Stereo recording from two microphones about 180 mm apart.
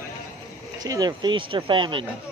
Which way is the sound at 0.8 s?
20° right (ahead or behind).